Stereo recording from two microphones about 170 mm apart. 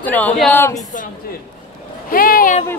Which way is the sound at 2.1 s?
55° left (ahead or behind).